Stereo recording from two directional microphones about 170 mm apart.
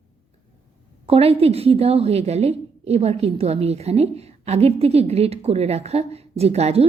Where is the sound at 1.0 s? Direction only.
35° right (ahead or behind).